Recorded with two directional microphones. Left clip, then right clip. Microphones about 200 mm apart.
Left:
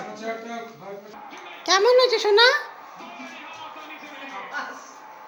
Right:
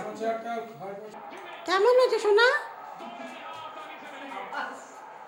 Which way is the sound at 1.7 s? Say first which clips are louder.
Left 4 dB; 10° left (ahead or behind).